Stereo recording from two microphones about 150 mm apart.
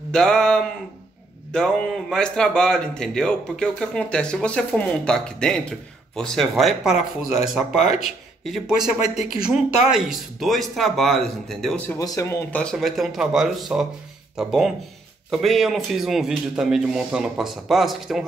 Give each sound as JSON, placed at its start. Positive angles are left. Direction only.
{"t": 0.1, "sound": "a man's voice", "side_deg": 5}
{"t": 12.0, "sound": "speech", "side_deg": 20}
{"t": 12.7, "sound": "a man's voice", "side_deg": 0}